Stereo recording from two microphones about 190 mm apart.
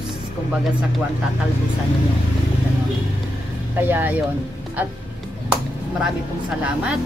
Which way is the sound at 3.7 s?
10° right (ahead or behind).